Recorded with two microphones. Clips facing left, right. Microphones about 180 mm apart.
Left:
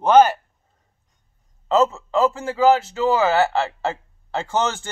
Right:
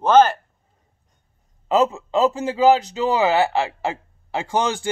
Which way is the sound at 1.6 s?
15° right (ahead or behind).